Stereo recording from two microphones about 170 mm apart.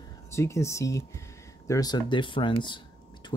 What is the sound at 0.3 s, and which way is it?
Speech, 15° left (ahead or behind).